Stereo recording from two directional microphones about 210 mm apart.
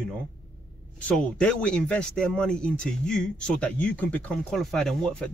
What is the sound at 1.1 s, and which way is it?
Speech, 5° left (ahead or behind).